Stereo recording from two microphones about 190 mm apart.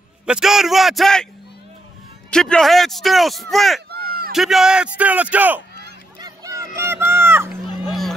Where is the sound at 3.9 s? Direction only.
50° right (ahead or behind).